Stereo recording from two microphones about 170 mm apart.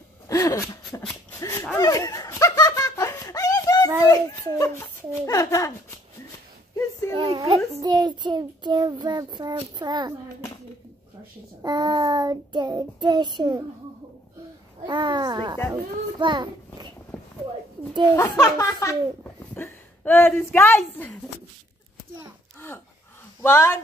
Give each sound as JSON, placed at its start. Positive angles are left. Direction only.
{"t": 0.3, "sound": "a sound", "side_deg": 20}
{"t": 1.8, "sound": "laughter", "side_deg": 20}
{"t": 4.1, "sound": "speech", "side_deg": 20}
{"t": 7.2, "sound": "a woman's voice", "side_deg": -30}
{"t": 7.8, "sound": "child singing", "side_deg": -25}
{"t": 11.6, "sound": "child singing", "side_deg": -25}
{"t": 14.9, "sound": "child singing", "side_deg": -25}
{"t": 15.7, "sound": "a child's voice", "side_deg": -25}
{"t": 18.1, "sound": "speech", "side_deg": 20}
{"t": 23.4, "sound": "speech", "side_deg": 15}